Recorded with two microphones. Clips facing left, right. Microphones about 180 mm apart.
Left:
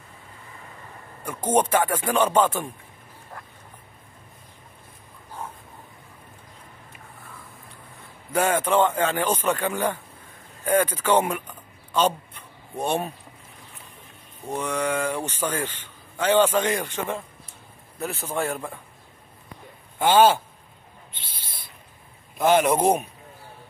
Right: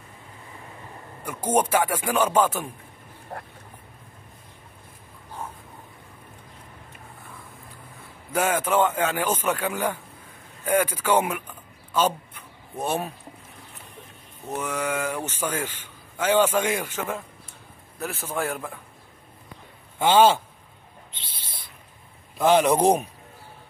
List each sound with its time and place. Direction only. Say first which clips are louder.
1.2 s a man's voice: left 1 dB; 10° right (ahead or behind)
3.3 s a sound: right 6 dB; 40° right (ahead or behind)
8.3 s a man's voice: left 2 dB; 5° right (ahead or behind)
14.4 s a man's voice: left 2 dB; 5° right (ahead or behind)
20.0 s speech: even; 10° left (ahead or behind)
22.5 s speech: right 1 dB; 5° left (ahead or behind)